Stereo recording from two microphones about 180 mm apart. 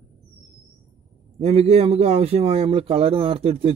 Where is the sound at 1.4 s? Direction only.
35° right (ahead or behind).